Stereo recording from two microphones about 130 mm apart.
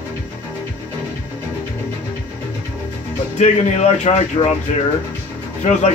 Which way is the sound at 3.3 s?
60° left (ahead or behind).